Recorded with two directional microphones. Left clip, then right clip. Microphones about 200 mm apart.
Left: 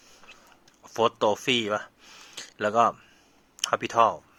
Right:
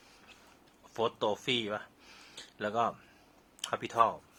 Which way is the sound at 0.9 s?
30° left (ahead or behind).